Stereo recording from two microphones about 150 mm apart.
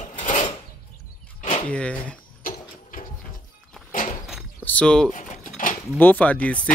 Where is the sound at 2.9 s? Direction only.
70° left (ahead or behind).